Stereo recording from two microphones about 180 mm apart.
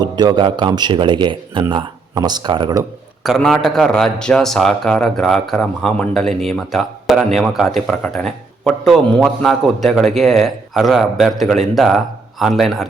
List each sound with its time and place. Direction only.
0.0 s speech: 25° right (ahead or behind)
3.2 s a man's voice: centre (ahead or behind)